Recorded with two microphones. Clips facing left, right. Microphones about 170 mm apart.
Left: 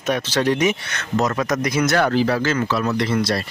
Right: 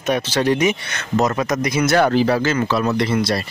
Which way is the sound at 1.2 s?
15° right (ahead or behind).